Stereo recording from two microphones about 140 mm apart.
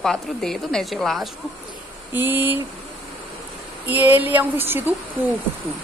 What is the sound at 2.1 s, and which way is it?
Speech, 15° right (ahead or behind).